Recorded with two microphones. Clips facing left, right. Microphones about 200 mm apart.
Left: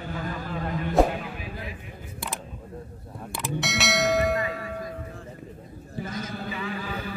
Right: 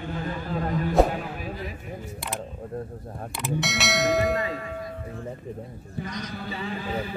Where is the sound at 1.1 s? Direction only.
45° right (ahead or behind).